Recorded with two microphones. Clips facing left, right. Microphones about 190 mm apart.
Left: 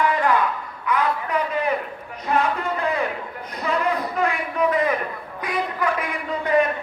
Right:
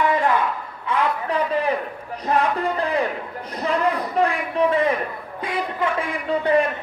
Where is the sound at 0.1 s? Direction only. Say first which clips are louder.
Right 1 dB; 25° right (ahead or behind).